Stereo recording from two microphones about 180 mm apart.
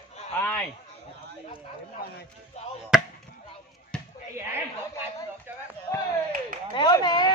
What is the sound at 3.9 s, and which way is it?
Basketball bounce, 5° left (ahead or behind).